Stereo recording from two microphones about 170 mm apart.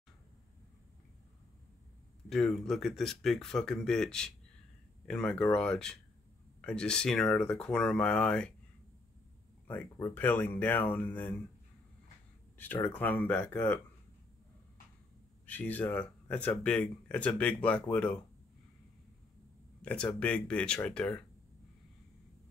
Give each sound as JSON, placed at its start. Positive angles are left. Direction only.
{"t": 2.2, "sound": "speech", "side_deg": 0}
{"t": 9.7, "sound": "speech", "side_deg": 15}
{"t": 12.5, "sound": "speech", "side_deg": 10}
{"t": 15.4, "sound": "speech", "side_deg": 10}
{"t": 19.8, "sound": "speech", "side_deg": 5}